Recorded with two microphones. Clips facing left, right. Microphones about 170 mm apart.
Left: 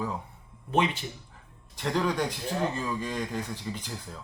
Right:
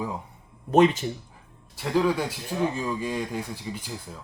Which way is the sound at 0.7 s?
45° right (ahead or behind).